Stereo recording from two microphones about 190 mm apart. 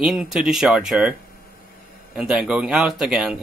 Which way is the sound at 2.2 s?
5° right (ahead or behind).